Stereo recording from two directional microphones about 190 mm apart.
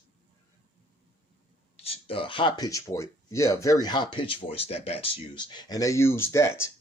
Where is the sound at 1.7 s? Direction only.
30° left (ahead or behind).